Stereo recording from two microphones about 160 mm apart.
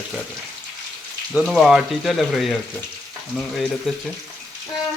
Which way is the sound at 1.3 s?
5° right (ahead or behind).